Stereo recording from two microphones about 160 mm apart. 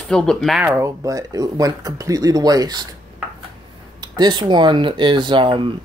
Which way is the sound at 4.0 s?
25° right (ahead or behind).